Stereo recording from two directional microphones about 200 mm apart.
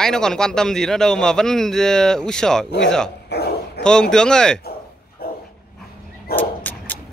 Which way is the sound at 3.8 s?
5° left (ahead or behind).